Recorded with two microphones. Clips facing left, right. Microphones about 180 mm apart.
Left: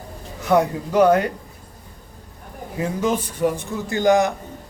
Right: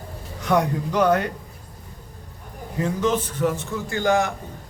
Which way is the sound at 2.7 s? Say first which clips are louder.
Even; 10° left (ahead or behind).